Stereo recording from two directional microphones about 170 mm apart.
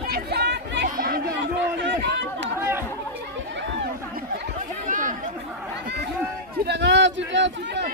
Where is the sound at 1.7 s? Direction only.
85° right.